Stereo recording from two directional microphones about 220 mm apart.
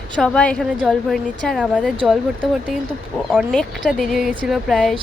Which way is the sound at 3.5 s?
5° left (ahead or behind).